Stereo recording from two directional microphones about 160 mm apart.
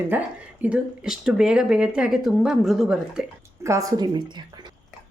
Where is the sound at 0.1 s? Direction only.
10° right (ahead or behind).